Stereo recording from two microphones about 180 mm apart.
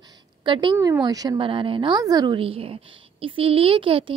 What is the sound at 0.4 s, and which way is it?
A woman's voice, 25° right (ahead or behind).